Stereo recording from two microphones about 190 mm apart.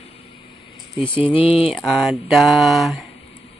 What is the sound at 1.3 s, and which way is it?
Speech, 30° left (ahead or behind).